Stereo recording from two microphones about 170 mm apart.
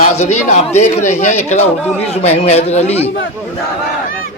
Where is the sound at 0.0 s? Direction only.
45° left (ahead or behind).